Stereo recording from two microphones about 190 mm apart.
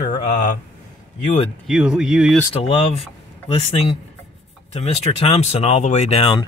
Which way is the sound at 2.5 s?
30° left (ahead or behind).